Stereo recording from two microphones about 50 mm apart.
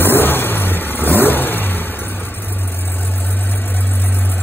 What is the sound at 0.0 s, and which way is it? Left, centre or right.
Vehicle, left.